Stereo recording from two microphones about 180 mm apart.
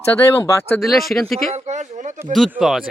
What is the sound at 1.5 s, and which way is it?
Speech, 40° right (ahead or behind).